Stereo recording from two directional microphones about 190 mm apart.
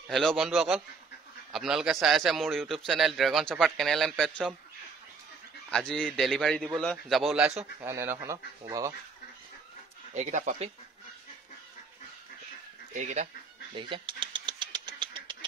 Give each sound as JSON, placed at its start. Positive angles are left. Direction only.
{"t": 0.1, "sound": "a man's voice", "side_deg": 0}
{"t": 5.7, "sound": "a man's voice", "side_deg": 5}
{"t": 10.1, "sound": "speech", "side_deg": -40}
{"t": 12.9, "sound": "speech", "side_deg": -40}
{"t": 13.7, "sound": "a sound", "side_deg": -25}